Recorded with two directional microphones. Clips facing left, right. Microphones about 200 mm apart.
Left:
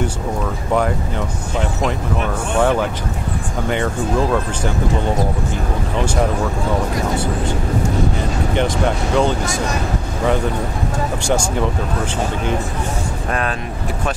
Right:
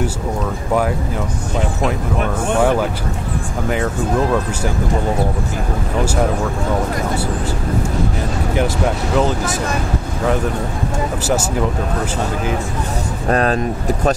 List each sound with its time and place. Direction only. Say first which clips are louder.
3.6 s speech: even; 5° right (ahead or behind)
8.5 s speech: even; 5° right (ahead or behind)
11.2 s speech: even; 5° right (ahead or behind)
13.3 s speech: right 8 dB; 35° right (ahead or behind)